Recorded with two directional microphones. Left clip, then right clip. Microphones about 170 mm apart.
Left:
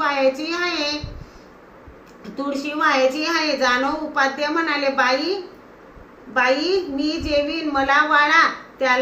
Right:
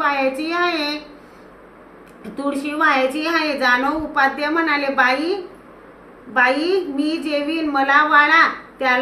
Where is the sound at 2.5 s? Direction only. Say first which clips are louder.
Right 2 dB; 20° right (ahead or behind).